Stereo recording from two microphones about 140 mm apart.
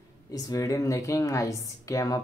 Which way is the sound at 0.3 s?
25° left (ahead or behind).